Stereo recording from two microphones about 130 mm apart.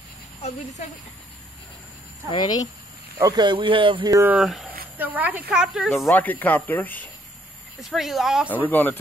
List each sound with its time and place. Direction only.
2.3 s speech: 30° left (ahead or behind)
3.2 s speech: 30° right (ahead or behind)
4.3 s speech: 5° right (ahead or behind)
5.9 s speech: 15° left (ahead or behind)
7.8 s speech: centre (ahead or behind)
8.5 s speech: 15° left (ahead or behind)